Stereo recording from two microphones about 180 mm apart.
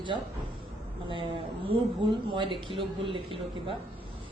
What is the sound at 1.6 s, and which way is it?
Speech, 30° right (ahead or behind).